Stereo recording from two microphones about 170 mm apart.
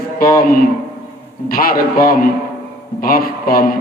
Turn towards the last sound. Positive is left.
turn(degrees=60)  # may be behind; listen again after turning